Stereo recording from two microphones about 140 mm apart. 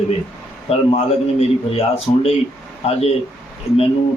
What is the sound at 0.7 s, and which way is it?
A man's voice, 50° left (ahead or behind).